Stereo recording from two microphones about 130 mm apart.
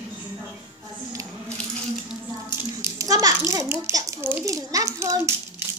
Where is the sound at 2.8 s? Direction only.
25° right (ahead or behind).